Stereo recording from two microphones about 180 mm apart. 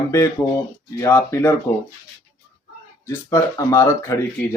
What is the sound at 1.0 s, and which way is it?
Speech, 15° left (ahead or behind).